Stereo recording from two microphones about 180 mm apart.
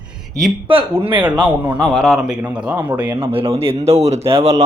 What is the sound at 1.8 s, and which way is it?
Speech, centre (ahead or behind).